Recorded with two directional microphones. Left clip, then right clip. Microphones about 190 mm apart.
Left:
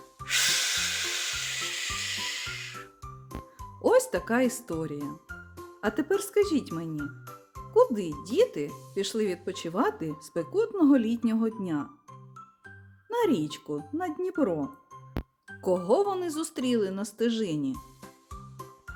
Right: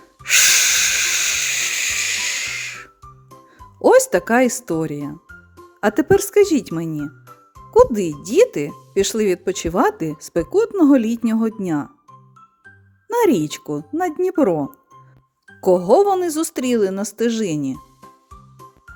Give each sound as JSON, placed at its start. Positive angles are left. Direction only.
{"t": 0.3, "sound": "hiss", "side_deg": -45}
{"t": 3.0, "sound": "music", "side_deg": 0}
{"t": 3.8, "sound": "speech", "side_deg": -40}
{"t": 4.9, "sound": "music", "side_deg": 0}
{"t": 5.8, "sound": "speech", "side_deg": -45}
{"t": 6.9, "sound": "music", "side_deg": 0}
{"t": 7.7, "sound": "a child's voice", "side_deg": -45}
{"t": 13.1, "sound": "speech", "side_deg": -45}
{"t": 18.0, "sound": "music", "side_deg": 0}